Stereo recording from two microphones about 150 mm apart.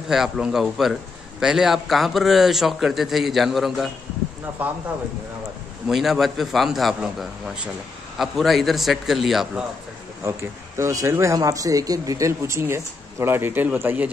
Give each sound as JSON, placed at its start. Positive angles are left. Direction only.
{"t": 0.1, "sound": "a man's voice", "side_deg": -5}
{"t": 5.9, "sound": "a man's voice", "side_deg": 0}
{"t": 10.8, "sound": "speech", "side_deg": -20}